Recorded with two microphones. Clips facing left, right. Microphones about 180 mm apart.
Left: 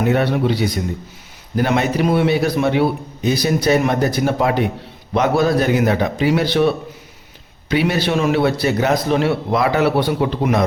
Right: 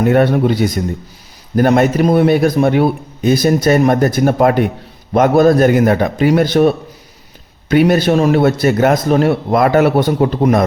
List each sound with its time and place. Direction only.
0.0 s a man's voice: 50° right (ahead or behind)